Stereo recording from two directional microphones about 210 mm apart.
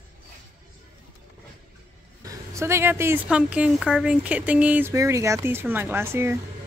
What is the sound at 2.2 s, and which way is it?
Speech, 15° right (ahead or behind).